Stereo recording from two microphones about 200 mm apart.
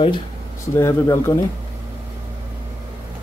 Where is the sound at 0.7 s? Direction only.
15° left (ahead or behind).